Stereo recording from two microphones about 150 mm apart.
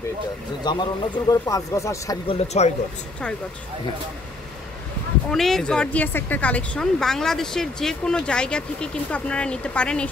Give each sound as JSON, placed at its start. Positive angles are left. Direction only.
{"t": 0.7, "sound": "speech", "side_deg": 30}
{"t": 2.2, "sound": "speech", "side_deg": 45}
{"t": 5.3, "sound": "speech", "side_deg": 0}